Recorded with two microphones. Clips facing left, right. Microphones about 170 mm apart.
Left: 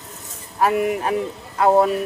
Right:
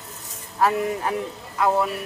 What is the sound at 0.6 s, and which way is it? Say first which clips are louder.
Speech: left 3 dB; 20° left (ahead or behind).